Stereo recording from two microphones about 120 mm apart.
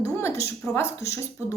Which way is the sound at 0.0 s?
20° left (ahead or behind).